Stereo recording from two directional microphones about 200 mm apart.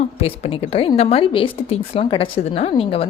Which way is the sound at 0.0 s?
30° left (ahead or behind).